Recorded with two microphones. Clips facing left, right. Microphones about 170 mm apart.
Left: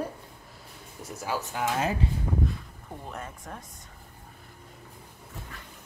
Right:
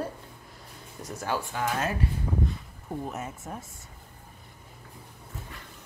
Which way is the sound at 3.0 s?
5° right (ahead or behind).